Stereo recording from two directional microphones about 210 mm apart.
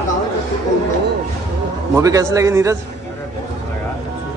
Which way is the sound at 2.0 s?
15° right (ahead or behind).